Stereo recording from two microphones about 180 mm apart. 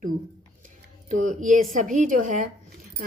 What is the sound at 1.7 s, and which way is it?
Speech, 45° right (ahead or behind).